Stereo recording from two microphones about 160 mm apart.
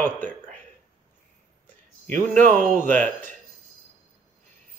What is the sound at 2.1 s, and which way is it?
Speech, 55° right (ahead or behind).